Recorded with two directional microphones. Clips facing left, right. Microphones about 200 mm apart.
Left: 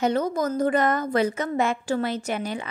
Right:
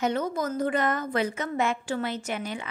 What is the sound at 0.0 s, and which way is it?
Speech, 40° left (ahead or behind).